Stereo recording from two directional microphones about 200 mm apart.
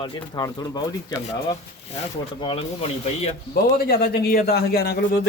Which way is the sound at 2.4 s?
25° left (ahead or behind).